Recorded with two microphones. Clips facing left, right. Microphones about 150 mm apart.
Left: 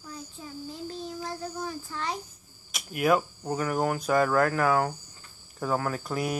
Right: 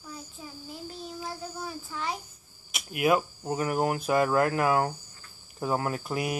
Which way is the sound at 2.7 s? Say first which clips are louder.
Even; 20° right (ahead or behind).